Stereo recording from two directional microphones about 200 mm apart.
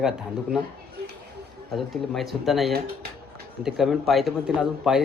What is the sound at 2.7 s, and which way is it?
Speech, 50° right (ahead or behind).